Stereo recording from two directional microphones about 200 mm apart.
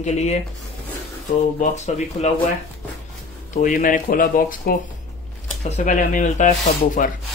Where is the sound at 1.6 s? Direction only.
35° left (ahead or behind).